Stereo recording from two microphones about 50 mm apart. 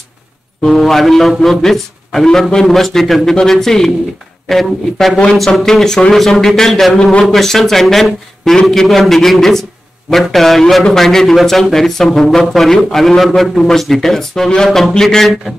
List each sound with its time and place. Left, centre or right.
0.6 s a man's voice: centre